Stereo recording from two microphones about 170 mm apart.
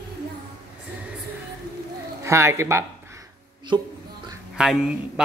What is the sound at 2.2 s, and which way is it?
Speech, 15° right (ahead or behind).